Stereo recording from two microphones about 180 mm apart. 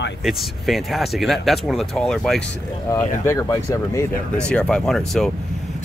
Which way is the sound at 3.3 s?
15° left (ahead or behind).